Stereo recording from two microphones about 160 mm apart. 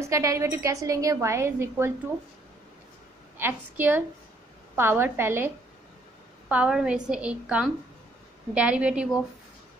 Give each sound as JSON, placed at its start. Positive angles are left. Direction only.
{"t": 0.0, "sound": "a woman's voice", "side_deg": -20}
{"t": 3.3, "sound": "a woman's voice", "side_deg": -15}
{"t": 6.5, "sound": "a woman's voice", "side_deg": -5}